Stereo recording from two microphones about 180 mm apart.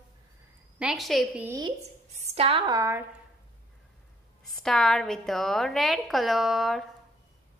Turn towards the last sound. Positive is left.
turn(degrees=0)  # may be behind; listen again after turning